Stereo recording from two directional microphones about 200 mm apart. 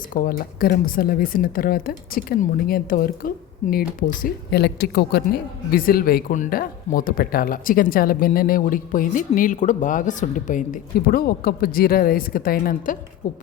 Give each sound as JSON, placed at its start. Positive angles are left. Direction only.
{"t": 0.1, "sound": "speech", "side_deg": 45}